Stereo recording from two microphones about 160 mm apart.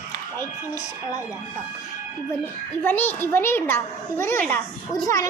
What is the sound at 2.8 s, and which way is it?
A child's voice, 10° left (ahead or behind).